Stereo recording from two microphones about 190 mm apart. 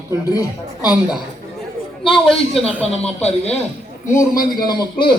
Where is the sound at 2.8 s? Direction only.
35° left (ahead or behind).